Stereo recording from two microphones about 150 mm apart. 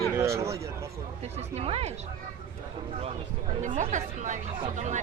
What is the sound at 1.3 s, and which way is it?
Speech, 45° right (ahead or behind).